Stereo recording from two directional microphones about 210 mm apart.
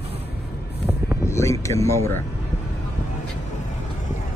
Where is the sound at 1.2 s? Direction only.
15° left (ahead or behind).